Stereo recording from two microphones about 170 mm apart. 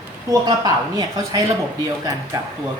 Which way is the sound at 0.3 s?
20° right (ahead or behind).